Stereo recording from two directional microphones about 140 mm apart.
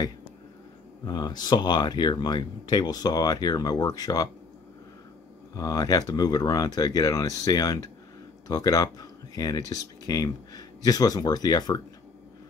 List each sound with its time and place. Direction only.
1.0 s speech: 30° left (ahead or behind)
5.5 s speech: 25° left (ahead or behind)